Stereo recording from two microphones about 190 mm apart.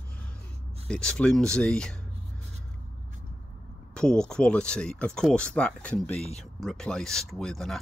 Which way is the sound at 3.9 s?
5° left (ahead or behind).